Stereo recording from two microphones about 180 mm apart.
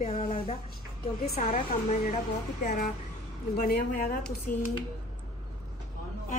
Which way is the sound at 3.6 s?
55° left (ahead or behind).